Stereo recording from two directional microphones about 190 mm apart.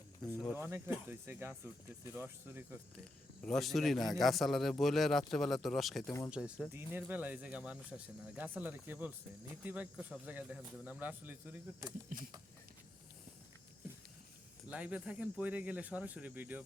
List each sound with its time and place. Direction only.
0.3 s speech: 15° left (ahead or behind)
0.6 s speech: 10° right (ahead or behind)
3.4 s a man's voice: centre (ahead or behind)
6.1 s speech: 15° left (ahead or behind)
6.7 s speech: 10° right (ahead or behind)
14.7 s speech: 5° right (ahead or behind)